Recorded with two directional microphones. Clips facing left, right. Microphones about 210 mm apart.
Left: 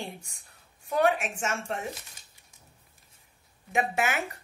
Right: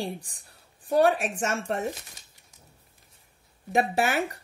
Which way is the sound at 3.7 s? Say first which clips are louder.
Right 3 dB; 35° right (ahead or behind).